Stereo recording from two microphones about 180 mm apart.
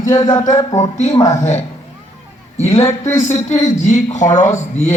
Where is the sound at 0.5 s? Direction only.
20° left (ahead or behind).